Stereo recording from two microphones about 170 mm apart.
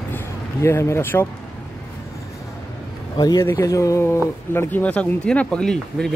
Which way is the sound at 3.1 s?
20° left (ahead or behind).